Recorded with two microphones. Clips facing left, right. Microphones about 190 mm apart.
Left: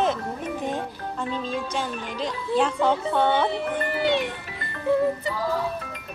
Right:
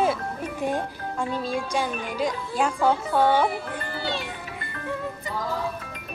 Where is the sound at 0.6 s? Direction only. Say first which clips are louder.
Right 2 dB; 10° right (ahead or behind).